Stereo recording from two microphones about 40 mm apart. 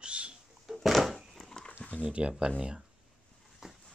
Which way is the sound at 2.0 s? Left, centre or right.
Right.